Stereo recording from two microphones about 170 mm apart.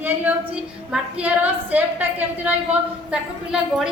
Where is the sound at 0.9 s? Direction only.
10° right (ahead or behind).